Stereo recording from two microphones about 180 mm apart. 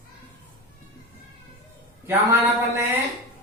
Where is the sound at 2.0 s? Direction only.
15° right (ahead or behind).